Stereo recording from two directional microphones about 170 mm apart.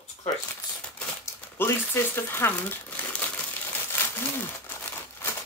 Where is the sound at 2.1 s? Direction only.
15° left (ahead or behind).